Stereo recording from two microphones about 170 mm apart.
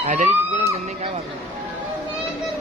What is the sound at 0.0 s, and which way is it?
Speech, 45° right (ahead or behind).